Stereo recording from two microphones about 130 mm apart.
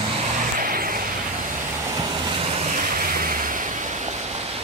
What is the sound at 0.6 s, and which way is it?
Vehicle, 90° right.